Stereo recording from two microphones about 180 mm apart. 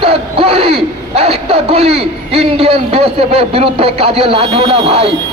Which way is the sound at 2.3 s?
30° right (ahead or behind).